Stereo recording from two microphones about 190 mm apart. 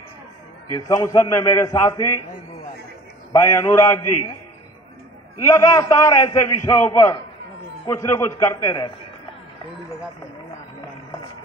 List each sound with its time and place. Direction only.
0.7 s a man's voice: 15° left (ahead or behind)
3.3 s a man's voice: 15° left (ahead or behind)
5.4 s a man's voice: 15° left (ahead or behind)